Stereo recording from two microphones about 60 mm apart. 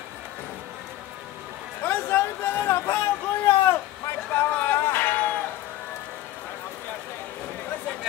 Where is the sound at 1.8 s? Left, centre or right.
Left.